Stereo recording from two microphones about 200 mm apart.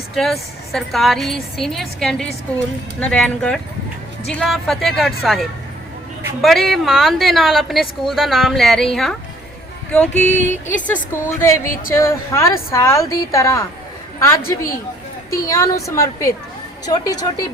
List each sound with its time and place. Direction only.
0.1 s a woman's voice: centre (ahead or behind)
10.3 s a sound: 35° left (ahead or behind)
10.7 s a woman's voice: 10° left (ahead or behind)